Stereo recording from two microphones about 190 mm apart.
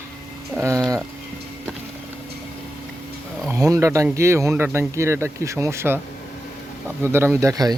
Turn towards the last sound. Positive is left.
turn(degrees=-20)  # may be behind; listen again after turning